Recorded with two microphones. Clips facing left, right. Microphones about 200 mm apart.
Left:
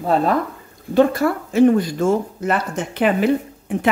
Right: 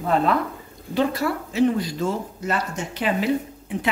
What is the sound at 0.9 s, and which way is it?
Speech, 50° left (ahead or behind).